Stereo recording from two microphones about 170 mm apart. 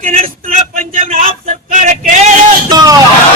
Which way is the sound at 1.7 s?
45° right (ahead or behind).